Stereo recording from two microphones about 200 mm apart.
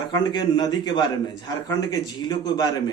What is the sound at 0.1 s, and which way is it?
A man's voice, 20° left (ahead or behind).